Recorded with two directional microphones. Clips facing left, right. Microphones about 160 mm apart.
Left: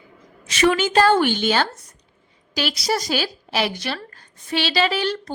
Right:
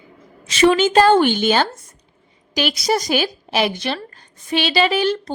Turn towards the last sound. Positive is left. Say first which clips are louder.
# right 4 dB
turn(degrees=-15)  # may be behind; listen again after turning